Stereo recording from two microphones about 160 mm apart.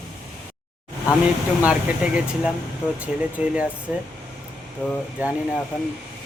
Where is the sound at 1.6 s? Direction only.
5° right (ahead or behind).